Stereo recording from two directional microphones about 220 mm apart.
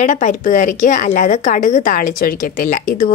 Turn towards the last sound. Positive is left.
turn(degrees=40)  # may be behind; listen again after turning